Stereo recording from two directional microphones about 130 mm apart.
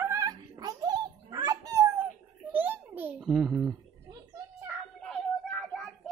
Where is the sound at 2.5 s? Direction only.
15° right (ahead or behind).